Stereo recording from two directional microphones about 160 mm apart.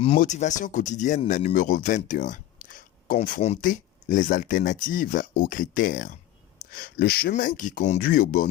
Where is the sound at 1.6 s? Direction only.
50° left (ahead or behind).